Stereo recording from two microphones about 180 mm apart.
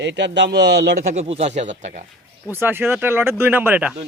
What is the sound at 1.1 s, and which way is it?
Speech, 40° right (ahead or behind).